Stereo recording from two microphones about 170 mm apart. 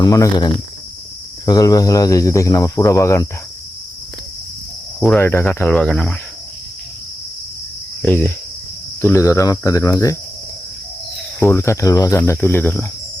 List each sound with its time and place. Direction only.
0.0 s speech: 25° left (ahead or behind)
4.9 s speech: 5° left (ahead or behind)
5.2 s speech: 15° left (ahead or behind)
8.0 s speech: 10° left (ahead or behind)
11.3 s speech: 15° left (ahead or behind)